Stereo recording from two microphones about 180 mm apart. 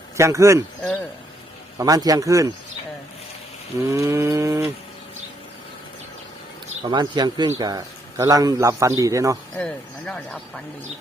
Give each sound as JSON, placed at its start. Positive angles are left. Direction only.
{"t": 0.2, "sound": "a man's voice", "side_deg": -15}
{"t": 1.8, "sound": "speech", "side_deg": -20}
{"t": 3.8, "sound": "a man's voice", "side_deg": -15}
{"t": 6.8, "sound": "a man's voice", "side_deg": -25}
{"t": 9.6, "sound": "speech", "side_deg": 5}